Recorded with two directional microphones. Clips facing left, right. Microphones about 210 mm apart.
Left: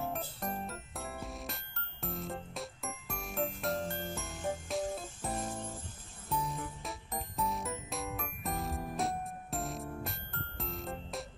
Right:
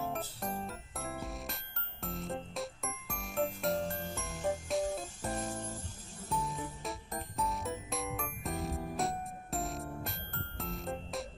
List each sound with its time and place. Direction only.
0.1 s music: centre (ahead or behind)